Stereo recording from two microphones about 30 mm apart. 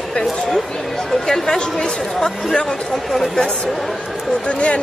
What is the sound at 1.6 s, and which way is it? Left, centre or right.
Speech, left.